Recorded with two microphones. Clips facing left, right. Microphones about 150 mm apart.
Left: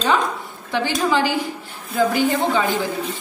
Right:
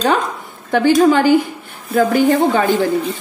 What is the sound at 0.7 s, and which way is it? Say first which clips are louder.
A woman's voice: right 9 dB; 50° right (ahead or behind).